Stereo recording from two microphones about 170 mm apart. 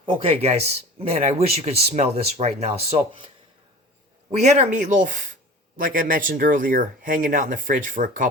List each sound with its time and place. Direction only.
0.0 s speech: 30° right (ahead or behind)
4.3 s speech: 40° right (ahead or behind)